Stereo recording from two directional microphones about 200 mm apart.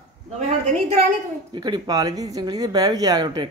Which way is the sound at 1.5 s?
20° right (ahead or behind).